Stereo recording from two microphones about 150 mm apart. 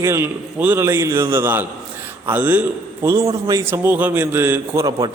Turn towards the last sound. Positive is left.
turn(degrees=-20)  # may be behind; listen again after turning